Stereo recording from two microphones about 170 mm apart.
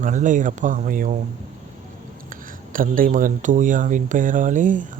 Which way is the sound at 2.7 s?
55° right (ahead or behind).